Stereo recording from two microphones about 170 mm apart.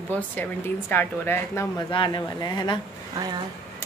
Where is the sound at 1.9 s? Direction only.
30° left (ahead or behind).